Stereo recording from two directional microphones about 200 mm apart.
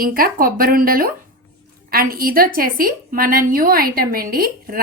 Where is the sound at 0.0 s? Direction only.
45° right (ahead or behind).